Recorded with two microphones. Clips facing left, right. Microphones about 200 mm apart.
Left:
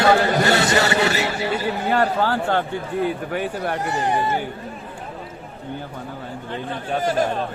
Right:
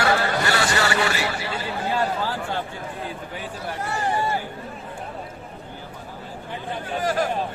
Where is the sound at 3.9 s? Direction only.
20° left (ahead or behind).